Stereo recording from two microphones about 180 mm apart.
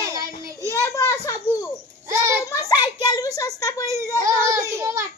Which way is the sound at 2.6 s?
20° left (ahead or behind).